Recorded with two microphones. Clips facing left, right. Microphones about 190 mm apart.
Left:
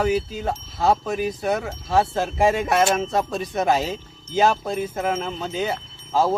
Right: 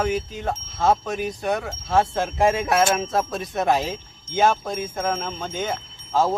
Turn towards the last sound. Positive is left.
turn(degrees=5)  # may be behind; listen again after turning